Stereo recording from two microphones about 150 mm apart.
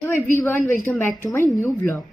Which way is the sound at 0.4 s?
15° left (ahead or behind).